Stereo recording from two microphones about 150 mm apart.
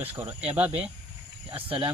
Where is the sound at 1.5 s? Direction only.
35° right (ahead or behind).